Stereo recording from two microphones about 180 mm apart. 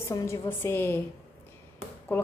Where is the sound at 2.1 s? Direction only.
10° left (ahead or behind).